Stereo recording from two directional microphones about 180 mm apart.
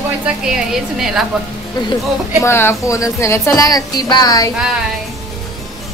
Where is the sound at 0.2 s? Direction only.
5° right (ahead or behind).